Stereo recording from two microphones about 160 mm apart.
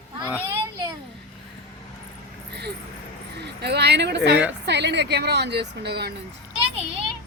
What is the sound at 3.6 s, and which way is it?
A woman's voice, 90° right.